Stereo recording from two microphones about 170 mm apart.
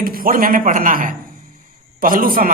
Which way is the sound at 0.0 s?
55° right (ahead or behind).